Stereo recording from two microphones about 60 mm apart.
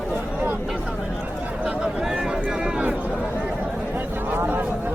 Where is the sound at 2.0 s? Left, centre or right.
Centre.